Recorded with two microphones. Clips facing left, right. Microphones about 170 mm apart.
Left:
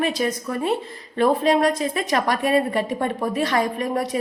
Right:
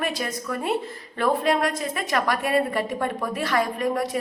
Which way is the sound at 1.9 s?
25° left (ahead or behind).